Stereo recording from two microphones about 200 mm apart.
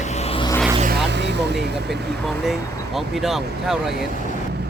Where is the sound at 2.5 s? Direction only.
Centre (ahead or behind).